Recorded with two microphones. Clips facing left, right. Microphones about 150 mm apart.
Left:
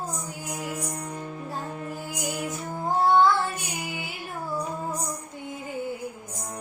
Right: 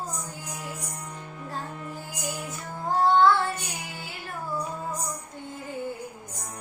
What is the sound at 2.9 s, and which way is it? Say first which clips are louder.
Child singing: even; 10° left (ahead or behind).